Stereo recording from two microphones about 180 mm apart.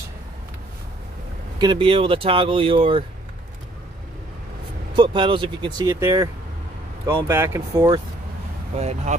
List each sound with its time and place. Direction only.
1.6 s speech: 25° right (ahead or behind)
4.9 s speech: 25° right (ahead or behind)
8.7 s speech: 35° right (ahead or behind)